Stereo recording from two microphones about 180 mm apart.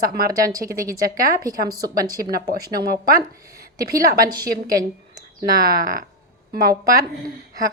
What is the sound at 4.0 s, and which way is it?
Speech, 55° right (ahead or behind).